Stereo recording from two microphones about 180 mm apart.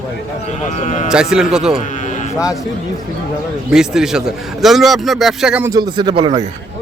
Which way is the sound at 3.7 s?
5° right (ahead or behind).